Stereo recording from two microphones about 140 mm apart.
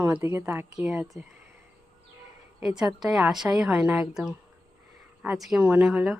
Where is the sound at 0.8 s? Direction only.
5° right (ahead or behind).